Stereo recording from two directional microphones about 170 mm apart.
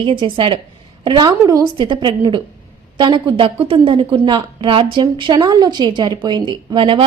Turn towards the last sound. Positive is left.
turn(degrees=-30)  # may be behind; listen again after turning